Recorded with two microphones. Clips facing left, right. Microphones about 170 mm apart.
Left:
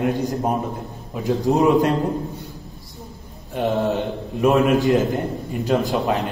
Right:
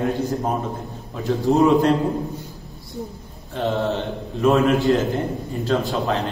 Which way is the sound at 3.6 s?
15° left (ahead or behind).